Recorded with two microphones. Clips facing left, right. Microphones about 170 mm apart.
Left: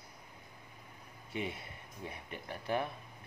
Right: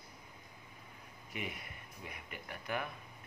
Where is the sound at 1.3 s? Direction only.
30° left (ahead or behind).